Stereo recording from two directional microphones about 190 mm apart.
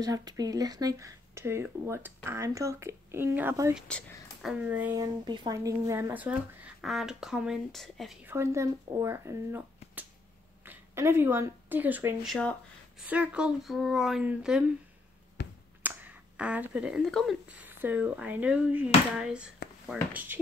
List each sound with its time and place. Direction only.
0.0 s speech: 20° right (ahead or behind)
3.7 s speech: centre (ahead or behind)
4.9 s speech: 20° right (ahead or behind); by 8.2 s centre (ahead or behind)
8.3 s speech: 15° right (ahead or behind)
12.3 s speech: 5° left (ahead or behind)
13.0 s speech: 5° right (ahead or behind)
15.4 s finger snapping: 65° left (ahead or behind)
15.8 s speech: 10° right (ahead or behind)